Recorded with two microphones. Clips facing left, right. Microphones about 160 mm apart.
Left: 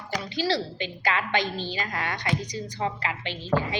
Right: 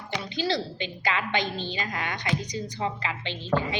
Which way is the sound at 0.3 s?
20° right (ahead or behind).